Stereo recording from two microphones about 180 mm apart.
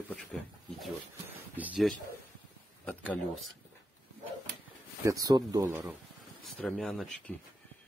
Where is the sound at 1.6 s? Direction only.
10° right (ahead or behind).